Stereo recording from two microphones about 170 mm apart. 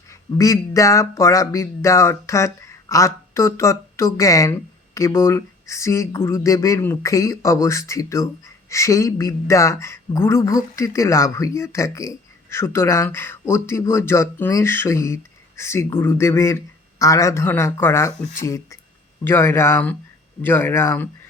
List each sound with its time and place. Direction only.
0.1 s speech: 20° left (ahead or behind)